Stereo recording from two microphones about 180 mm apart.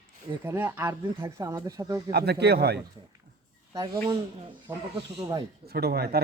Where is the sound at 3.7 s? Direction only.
20° right (ahead or behind).